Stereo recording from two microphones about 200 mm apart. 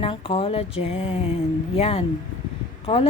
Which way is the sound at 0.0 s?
30° left (ahead or behind).